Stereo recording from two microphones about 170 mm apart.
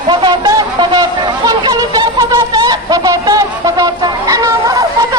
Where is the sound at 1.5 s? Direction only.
20° right (ahead or behind).